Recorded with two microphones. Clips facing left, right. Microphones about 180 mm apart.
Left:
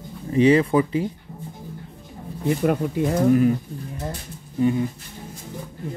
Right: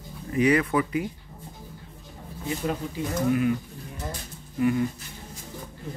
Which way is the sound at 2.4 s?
60° left (ahead or behind).